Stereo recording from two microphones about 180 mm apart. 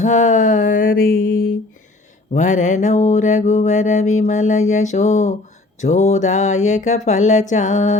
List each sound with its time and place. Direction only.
0.0 s music: 45° left (ahead or behind)
2.3 s mantra: 40° left (ahead or behind)